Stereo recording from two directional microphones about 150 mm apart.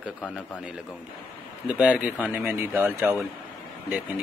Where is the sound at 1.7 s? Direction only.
10° right (ahead or behind).